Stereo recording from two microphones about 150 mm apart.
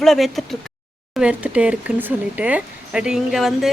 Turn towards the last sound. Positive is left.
turn(degrees=0)  # may be behind; listen again after turning